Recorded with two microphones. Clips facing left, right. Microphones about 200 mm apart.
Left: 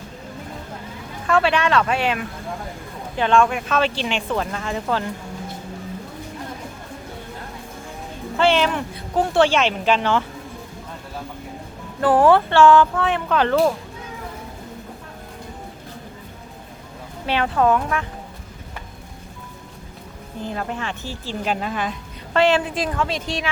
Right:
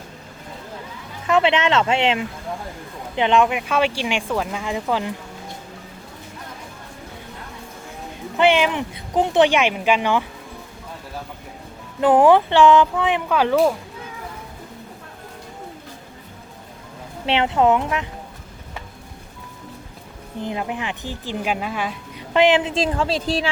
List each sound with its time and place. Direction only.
1.3 s a woman's voice: 20° right (ahead or behind)
8.4 s a woman's voice: 15° right (ahead or behind)
11.9 s a woman's voice: 20° right (ahead or behind)
17.2 s speech: 20° right (ahead or behind)
20.4 s a woman's voice: 15° right (ahead or behind); by 23.5 s 35° right (ahead or behind)